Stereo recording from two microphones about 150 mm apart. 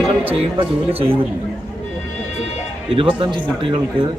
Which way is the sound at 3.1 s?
35° right (ahead or behind).